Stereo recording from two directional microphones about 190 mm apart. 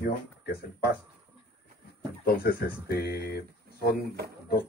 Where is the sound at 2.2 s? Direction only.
55° left (ahead or behind).